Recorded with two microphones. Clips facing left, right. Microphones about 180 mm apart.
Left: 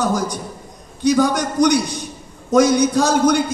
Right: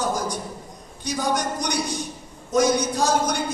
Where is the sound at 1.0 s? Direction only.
75° left (ahead or behind).